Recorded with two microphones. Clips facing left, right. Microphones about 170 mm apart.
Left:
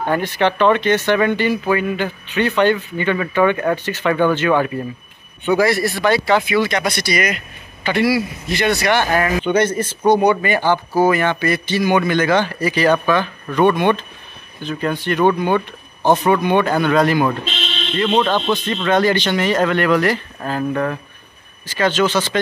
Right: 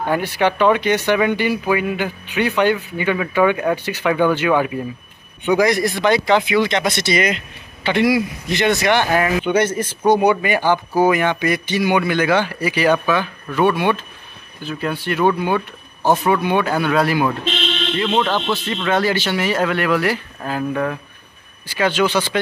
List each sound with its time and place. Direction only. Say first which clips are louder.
0.0 s speech: left 1 dB; 10° right (ahead or behind)